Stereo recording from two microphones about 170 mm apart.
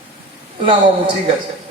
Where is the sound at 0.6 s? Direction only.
30° right (ahead or behind).